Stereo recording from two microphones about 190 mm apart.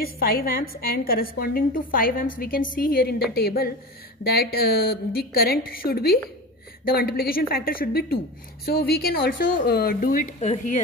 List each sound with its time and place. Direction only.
0.0 s a woman's voice: 50° left (ahead or behind)